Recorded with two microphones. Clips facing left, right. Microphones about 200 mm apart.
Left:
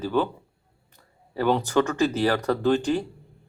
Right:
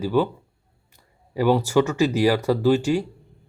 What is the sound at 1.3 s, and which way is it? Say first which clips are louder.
Speech: right 3 dB; 10° right (ahead or behind).